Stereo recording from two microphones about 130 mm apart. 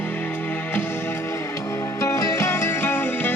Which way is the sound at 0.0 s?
15° left (ahead or behind).